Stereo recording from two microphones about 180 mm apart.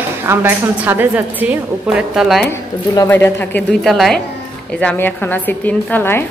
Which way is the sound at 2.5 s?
10° left (ahead or behind).